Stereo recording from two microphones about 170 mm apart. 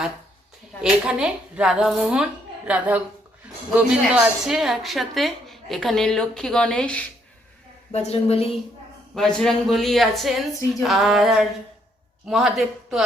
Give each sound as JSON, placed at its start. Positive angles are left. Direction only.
{"t": 0.8, "sound": "a woman's voice", "side_deg": -5}
{"t": 7.9, "sound": "a woman's voice", "side_deg": 35}
{"t": 9.1, "sound": "a woman's voice", "side_deg": 5}